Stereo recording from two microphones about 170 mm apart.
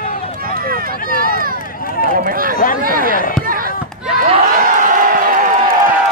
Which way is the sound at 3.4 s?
55° right (ahead or behind).